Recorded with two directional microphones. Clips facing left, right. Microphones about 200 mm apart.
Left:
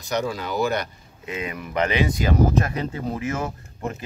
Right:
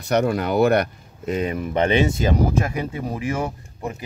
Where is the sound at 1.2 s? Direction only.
40° right (ahead or behind).